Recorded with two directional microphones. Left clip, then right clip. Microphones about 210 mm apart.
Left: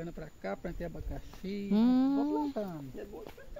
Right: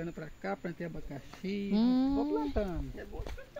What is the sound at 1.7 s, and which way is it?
Speech, 15° left (ahead or behind).